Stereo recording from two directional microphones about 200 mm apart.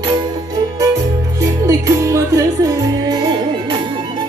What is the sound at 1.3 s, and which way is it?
Music, 15° right (ahead or behind).